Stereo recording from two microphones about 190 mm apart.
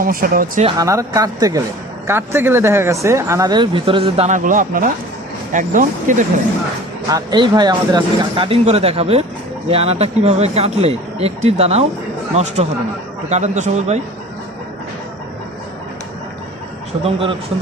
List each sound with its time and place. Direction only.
0.0 s speech: 50° right (ahead or behind)
0.8 s speech: 15° right (ahead or behind)
4.3 s speech: 45° right (ahead or behind)
7.1 s speech: 20° right (ahead or behind); by 14.0 s 35° right (ahead or behind)
17.0 s speech: 30° right (ahead or behind)